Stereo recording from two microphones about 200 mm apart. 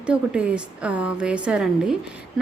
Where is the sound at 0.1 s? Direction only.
5° right (ahead or behind).